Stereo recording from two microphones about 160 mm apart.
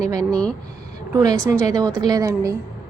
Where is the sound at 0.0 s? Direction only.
20° right (ahead or behind).